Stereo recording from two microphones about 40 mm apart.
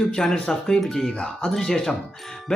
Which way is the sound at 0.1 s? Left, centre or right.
Centre.